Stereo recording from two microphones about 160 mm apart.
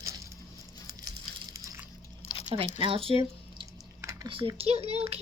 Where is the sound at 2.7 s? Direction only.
35° right (ahead or behind).